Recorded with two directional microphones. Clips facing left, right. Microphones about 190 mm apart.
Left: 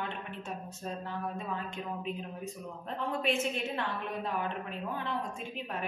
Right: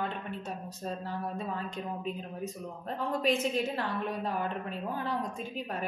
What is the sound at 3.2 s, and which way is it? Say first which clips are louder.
A woman's voice: right 4 dB; 35° right (ahead or behind).